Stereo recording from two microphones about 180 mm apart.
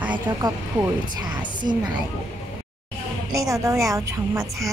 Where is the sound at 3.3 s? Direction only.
15° right (ahead or behind).